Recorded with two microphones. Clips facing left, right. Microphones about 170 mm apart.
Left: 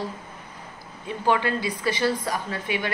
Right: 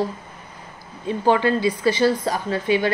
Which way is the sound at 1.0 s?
30° right (ahead or behind).